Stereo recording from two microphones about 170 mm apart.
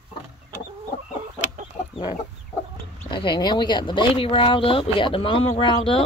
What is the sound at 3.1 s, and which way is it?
Speech, 25° left (ahead or behind).